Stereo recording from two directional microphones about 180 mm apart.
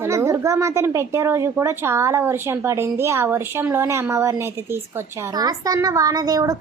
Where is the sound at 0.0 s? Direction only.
15° right (ahead or behind).